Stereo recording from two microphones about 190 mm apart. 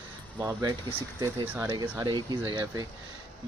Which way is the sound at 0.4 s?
15° right (ahead or behind).